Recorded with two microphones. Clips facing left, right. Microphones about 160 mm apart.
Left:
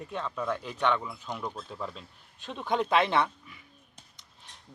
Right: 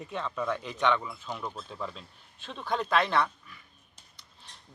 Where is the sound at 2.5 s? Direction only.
20° left (ahead or behind).